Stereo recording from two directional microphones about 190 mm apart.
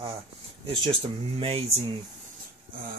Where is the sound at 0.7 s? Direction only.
25° right (ahead or behind).